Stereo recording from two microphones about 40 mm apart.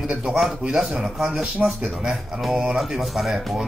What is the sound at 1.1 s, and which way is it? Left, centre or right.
Speech, centre.